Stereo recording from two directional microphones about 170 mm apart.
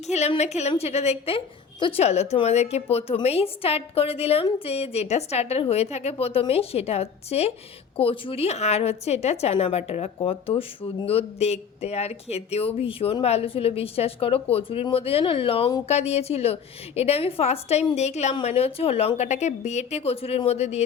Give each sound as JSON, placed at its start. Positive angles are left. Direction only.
{"t": 0.1, "sound": "a woman's voice", "side_deg": 40}